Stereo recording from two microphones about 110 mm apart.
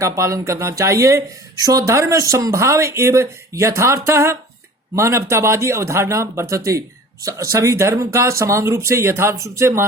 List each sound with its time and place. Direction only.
0.2 s speech: 30° right (ahead or behind)